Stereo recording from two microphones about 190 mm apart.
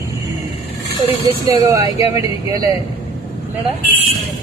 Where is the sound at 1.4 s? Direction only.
15° right (ahead or behind).